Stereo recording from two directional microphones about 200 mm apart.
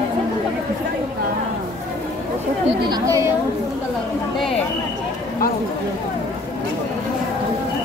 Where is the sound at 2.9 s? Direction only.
15° right (ahead or behind).